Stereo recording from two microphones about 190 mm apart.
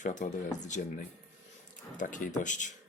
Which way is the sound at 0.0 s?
40° left (ahead or behind).